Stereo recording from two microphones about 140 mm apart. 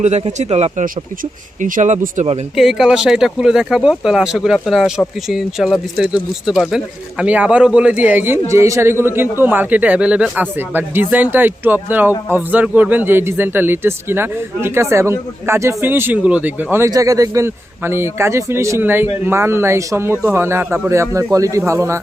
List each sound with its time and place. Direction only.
0.0 s speech: 50° right (ahead or behind)
1.2 s speech: 75° right (ahead or behind); by 2.4 s 55° right (ahead or behind)
2.6 s a man's voice: centre (ahead or behind); by 22.0 s 20° right (ahead or behind)